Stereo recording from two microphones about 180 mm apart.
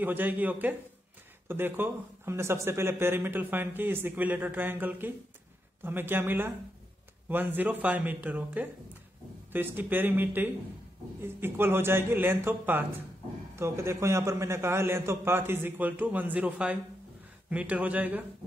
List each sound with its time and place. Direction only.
0.0 s speech: 10° right (ahead or behind)